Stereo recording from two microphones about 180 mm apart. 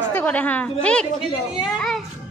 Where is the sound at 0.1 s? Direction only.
10° left (ahead or behind).